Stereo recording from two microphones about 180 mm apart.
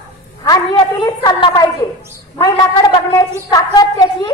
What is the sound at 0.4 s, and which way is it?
A woman's voice, 25° left (ahead or behind).